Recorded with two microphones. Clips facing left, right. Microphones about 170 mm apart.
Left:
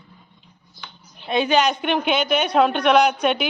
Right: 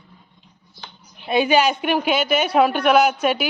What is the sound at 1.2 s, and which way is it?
A woman's voice, 5° right (ahead or behind).